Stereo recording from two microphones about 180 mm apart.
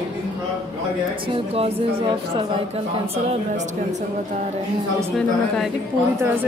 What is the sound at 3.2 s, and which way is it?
Speech, 40° right (ahead or behind).